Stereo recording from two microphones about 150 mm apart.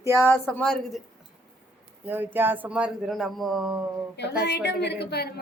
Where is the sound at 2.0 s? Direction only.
15° right (ahead or behind).